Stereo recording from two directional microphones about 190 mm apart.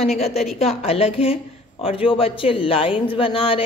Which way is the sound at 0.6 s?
30° left (ahead or behind).